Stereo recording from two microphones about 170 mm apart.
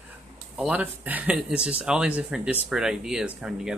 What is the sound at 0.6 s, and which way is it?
Speech, 10° right (ahead or behind).